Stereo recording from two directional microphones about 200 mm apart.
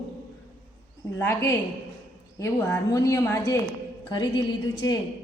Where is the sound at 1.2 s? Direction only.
15° left (ahead or behind).